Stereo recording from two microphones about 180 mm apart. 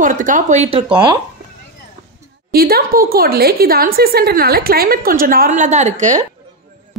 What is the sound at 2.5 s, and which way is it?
A woman's voice, 55° right (ahead or behind).